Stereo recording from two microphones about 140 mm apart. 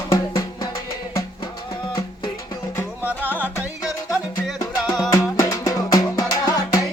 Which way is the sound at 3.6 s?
5° right (ahead or behind).